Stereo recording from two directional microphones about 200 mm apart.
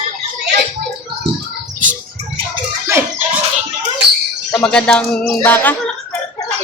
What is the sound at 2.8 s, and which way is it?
Chicken, 10° right (ahead or behind).